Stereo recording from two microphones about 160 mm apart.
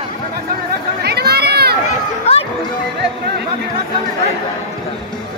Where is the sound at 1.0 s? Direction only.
85° right.